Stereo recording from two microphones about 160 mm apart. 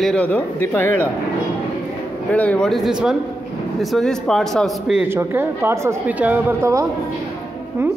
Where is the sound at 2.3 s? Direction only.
10° left (ahead or behind).